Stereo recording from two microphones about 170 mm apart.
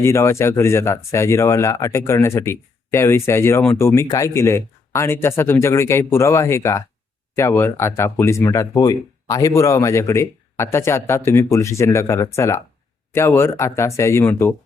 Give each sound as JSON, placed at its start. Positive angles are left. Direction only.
{"t": 0.0, "sound": "speech", "side_deg": 15}